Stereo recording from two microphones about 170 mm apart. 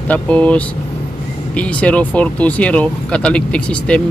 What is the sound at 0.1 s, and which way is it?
Speech, 10° left (ahead or behind).